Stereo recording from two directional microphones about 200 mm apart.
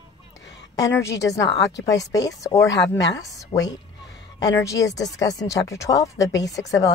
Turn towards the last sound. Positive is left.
turn(degrees=15)  # may be behind; listen again after turning